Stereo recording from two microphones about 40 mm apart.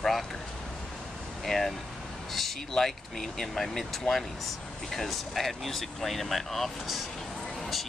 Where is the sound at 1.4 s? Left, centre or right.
Centre.